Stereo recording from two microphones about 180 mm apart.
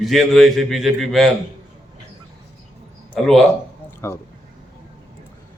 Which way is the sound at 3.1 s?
Centre (ahead or behind).